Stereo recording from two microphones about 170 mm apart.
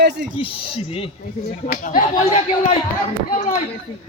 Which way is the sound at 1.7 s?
55° left (ahead or behind).